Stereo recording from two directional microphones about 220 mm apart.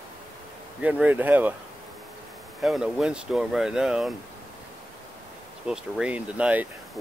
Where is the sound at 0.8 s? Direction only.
5° right (ahead or behind).